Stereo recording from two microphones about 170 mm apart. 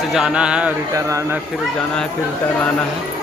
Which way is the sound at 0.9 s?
20° right (ahead or behind).